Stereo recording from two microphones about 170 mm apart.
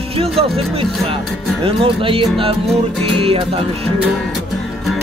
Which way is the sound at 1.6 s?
30° right (ahead or behind).